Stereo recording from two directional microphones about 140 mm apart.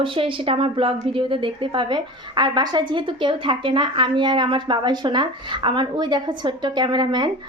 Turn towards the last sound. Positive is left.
turn(degrees=-30)  # may be behind; listen again after turning